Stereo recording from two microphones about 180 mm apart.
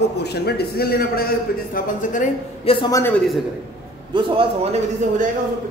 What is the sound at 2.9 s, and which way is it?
Speech, 10° left (ahead or behind).